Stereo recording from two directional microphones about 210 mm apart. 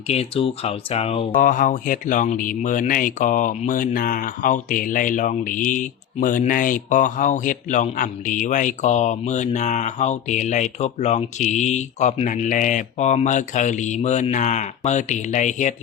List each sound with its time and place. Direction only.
0.1 s speech: 30° left (ahead or behind)